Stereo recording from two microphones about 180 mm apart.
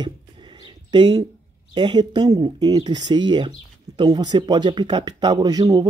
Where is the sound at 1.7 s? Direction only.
25° right (ahead or behind).